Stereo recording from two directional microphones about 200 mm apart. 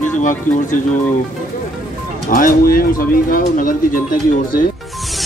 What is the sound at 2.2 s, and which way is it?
Speech, 45° left (ahead or behind).